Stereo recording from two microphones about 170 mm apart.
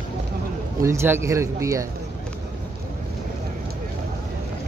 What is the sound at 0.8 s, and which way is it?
Speech, 15° right (ahead or behind).